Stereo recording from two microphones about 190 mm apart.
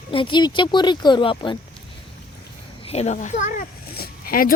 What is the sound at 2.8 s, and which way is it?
Speech, 35° left (ahead or behind).